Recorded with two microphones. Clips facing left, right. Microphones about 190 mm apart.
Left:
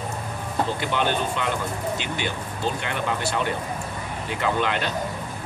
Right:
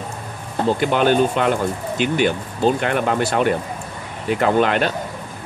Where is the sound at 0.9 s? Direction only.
50° right (ahead or behind).